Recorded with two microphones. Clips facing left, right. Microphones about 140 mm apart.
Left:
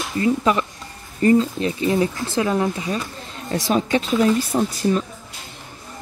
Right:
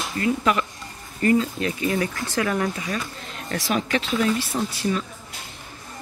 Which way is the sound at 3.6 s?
35° left (ahead or behind).